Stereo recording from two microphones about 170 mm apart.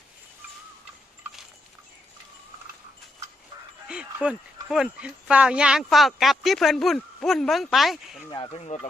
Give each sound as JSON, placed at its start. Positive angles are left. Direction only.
{"t": 3.8, "sound": "dog", "side_deg": -5}
{"t": 4.7, "sound": "speech", "side_deg": -5}
{"t": 8.3, "sound": "speech", "side_deg": 25}
{"t": 8.6, "sound": "speech", "side_deg": 40}